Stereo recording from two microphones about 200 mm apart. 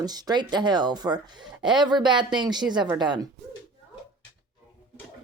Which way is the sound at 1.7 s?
20° right (ahead or behind).